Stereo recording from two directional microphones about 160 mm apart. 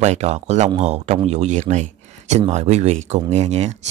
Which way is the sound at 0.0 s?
45° right (ahead or behind).